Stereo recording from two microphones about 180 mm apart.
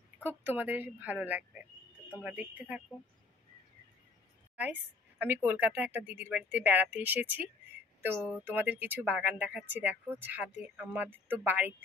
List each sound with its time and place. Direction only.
0.2 s a woman's voice: 10° right (ahead or behind)
4.6 s a woman's voice: 10° right (ahead or behind)